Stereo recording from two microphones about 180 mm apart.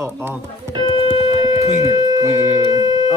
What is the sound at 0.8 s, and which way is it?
Music, 25° left (ahead or behind).